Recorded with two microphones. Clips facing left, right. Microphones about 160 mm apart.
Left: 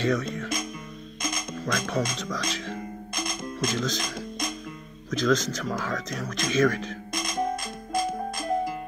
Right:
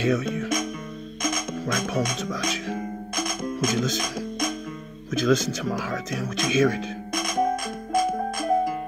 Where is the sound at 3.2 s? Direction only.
50° right (ahead or behind).